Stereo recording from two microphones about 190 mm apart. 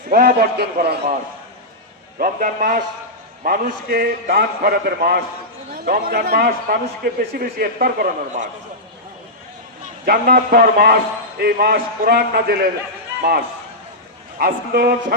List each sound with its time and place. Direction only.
0.1 s a man's voice: 50° right (ahead or behind)
2.1 s a man's voice: 45° right (ahead or behind)
10.1 s a man's voice: 50° right (ahead or behind)
14.3 s a man's voice: 50° right (ahead or behind)